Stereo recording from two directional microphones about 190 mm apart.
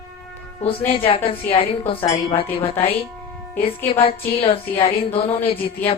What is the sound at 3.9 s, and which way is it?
A woman's voice, 30° left (ahead or behind).